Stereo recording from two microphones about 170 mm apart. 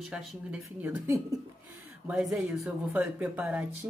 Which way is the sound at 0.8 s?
15° right (ahead or behind).